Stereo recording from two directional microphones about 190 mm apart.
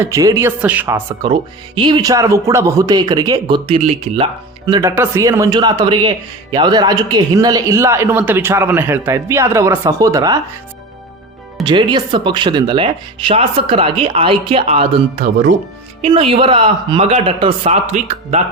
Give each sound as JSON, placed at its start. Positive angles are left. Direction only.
{"t": 0.0, "sound": "a man's voice", "side_deg": -15}
{"t": 1.8, "sound": "speech", "side_deg": -20}
{"t": 4.6, "sound": "a man's voice", "side_deg": -20}
{"t": 11.6, "sound": "speech", "side_deg": -25}